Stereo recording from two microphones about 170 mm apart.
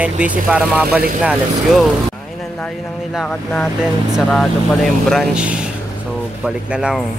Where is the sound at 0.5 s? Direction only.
5° right (ahead or behind).